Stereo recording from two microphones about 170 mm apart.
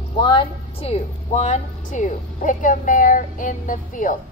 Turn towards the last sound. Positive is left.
turn(degrees=50)  # may be behind; listen again after turning